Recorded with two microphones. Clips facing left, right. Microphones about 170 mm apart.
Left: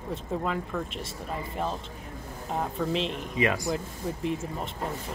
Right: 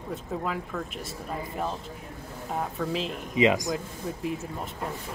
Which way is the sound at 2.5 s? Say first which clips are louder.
Left 1 dB; centre (ahead or behind).